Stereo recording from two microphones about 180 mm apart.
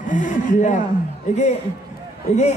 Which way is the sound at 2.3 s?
35° left (ahead or behind).